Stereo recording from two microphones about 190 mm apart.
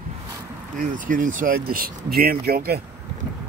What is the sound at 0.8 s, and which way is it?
Speech, 45° right (ahead or behind).